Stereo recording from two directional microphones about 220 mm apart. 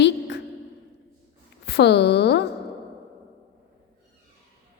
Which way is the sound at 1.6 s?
50° left (ahead or behind).